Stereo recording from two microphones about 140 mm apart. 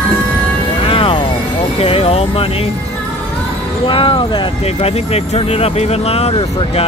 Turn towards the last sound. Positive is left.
turn(degrees=45)  # may be behind; listen again after turning